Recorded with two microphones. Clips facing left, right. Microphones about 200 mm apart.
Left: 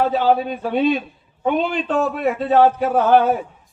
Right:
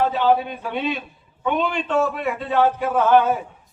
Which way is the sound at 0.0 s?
40° left (ahead or behind).